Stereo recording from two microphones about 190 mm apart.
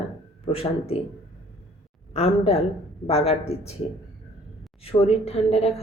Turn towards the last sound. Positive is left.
turn(degrees=30)  # may be behind; listen again after turning